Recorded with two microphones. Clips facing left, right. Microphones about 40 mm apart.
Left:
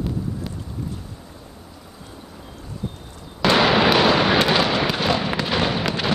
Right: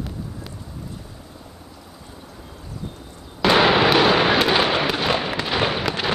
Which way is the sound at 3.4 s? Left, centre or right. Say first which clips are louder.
Right 1 dB; centre.